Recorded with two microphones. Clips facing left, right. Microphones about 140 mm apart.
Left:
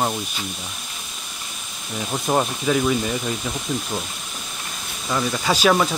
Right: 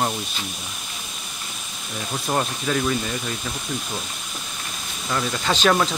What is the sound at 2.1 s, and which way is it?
Speech, 15° left (ahead or behind).